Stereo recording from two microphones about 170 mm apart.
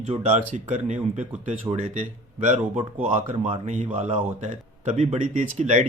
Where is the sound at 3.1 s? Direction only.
40° right (ahead or behind).